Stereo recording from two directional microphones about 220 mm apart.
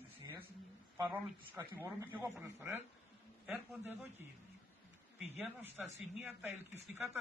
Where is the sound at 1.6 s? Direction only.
20° right (ahead or behind).